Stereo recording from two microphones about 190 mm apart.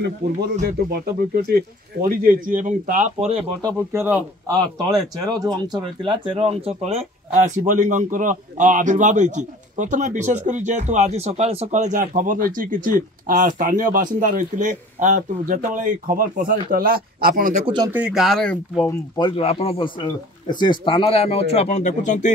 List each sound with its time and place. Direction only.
0.0 s speech: 60° right (ahead or behind); by 3.4 s 35° right (ahead or behind)
3.6 s speech: 15° right (ahead or behind); by 17.6 s 45° right (ahead or behind)
17.9 s speech: 5° right (ahead or behind)
19.1 s speech: 25° left (ahead or behind)